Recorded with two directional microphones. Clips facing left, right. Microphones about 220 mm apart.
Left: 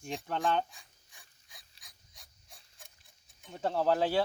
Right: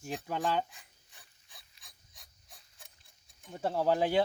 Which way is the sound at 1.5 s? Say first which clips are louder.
Even; centre (ahead or behind).